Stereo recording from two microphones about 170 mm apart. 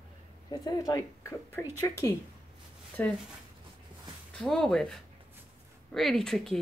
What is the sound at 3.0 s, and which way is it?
Speech, 10° left (ahead or behind).